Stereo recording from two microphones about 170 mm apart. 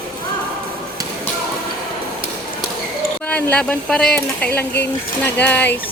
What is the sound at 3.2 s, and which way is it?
Speech, 10° left (ahead or behind).